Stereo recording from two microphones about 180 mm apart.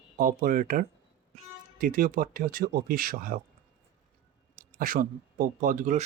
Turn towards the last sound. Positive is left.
turn(degrees=-45)  # may be behind; listen again after turning